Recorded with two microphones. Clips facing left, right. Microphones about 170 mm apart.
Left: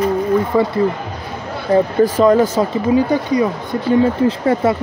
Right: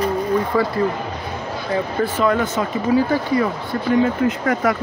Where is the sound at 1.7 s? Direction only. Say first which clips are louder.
Left 8 dB; 35° left (ahead or behind).